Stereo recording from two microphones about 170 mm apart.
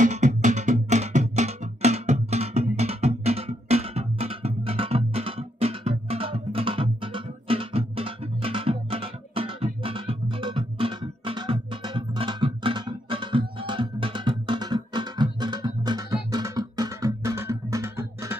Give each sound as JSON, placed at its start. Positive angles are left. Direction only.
{"t": 0.0, "sound": "music", "side_deg": -45}